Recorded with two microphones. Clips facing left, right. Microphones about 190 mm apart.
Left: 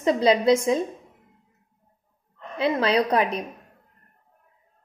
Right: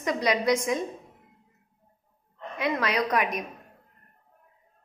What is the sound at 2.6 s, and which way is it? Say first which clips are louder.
Speech: left 5 dB; 30° left (ahead or behind).